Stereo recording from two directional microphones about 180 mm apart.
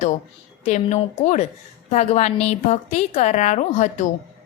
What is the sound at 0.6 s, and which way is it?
A woman's voice, 40° left (ahead or behind).